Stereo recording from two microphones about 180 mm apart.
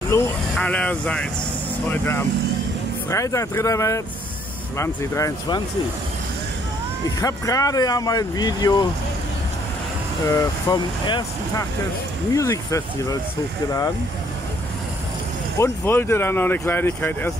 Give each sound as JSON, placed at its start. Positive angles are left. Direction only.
{"t": 0.1, "sound": "speech", "side_deg": 10}
{"t": 7.2, "sound": "speech", "side_deg": 20}
{"t": 10.2, "sound": "speech", "side_deg": 20}
{"t": 15.6, "sound": "speech", "side_deg": 10}